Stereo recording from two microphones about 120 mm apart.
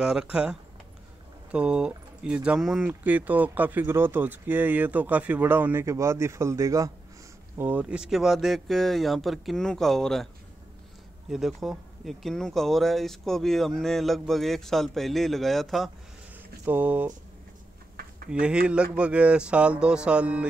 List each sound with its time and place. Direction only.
0.0 s speech: 5° right (ahead or behind); by 6.9 s 25° right (ahead or behind)
7.5 s speech: 15° right (ahead or behind); by 10.2 s 5° left (ahead or behind)
11.2 s speech: 5° right (ahead or behind)
16.6 s speech: 15° right (ahead or behind)
18.4 s speech: 10° right (ahead or behind)